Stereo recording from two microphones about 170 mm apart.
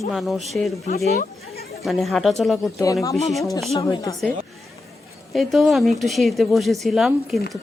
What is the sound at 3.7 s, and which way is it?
Speech, 20° left (ahead or behind).